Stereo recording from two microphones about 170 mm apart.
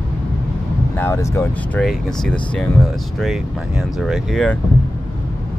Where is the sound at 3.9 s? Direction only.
Centre (ahead or behind).